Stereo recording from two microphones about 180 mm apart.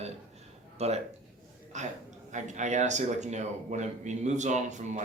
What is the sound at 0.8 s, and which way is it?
A man's voice, 35° right (ahead or behind).